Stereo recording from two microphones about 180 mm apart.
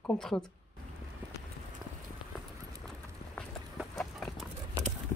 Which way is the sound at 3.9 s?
Centre (ahead or behind).